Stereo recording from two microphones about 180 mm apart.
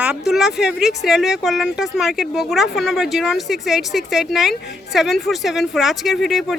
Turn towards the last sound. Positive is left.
turn(degrees=0)  # may be behind; listen again after turning